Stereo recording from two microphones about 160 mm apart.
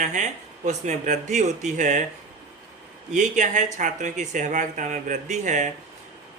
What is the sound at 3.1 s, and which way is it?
Speech, 50° right (ahead or behind).